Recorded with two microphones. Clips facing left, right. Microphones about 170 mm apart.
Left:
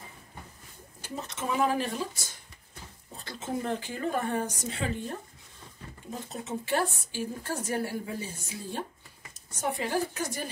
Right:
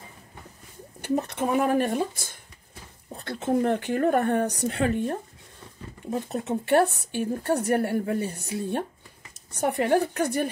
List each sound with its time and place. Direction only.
1.0 s speech: 60° right (ahead or behind)